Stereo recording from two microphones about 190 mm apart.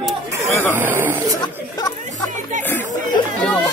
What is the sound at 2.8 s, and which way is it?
Chatter, 45° right (ahead or behind).